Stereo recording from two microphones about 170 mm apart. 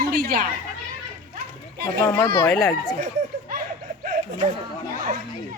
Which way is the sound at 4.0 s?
50° right (ahead or behind).